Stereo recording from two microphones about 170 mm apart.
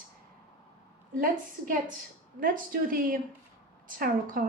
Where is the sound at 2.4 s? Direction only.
55° right (ahead or behind).